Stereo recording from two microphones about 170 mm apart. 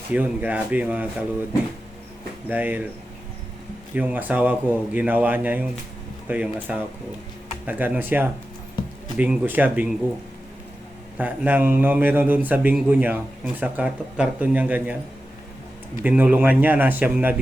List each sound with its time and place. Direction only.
0.1 s a man's voice: 10° right (ahead or behind)
2.5 s a man's voice: 10° right (ahead or behind)
3.9 s a man's voice: 10° right (ahead or behind)
11.2 s a man's voice: 10° right (ahead or behind)
16.0 s a man's voice: 10° right (ahead or behind)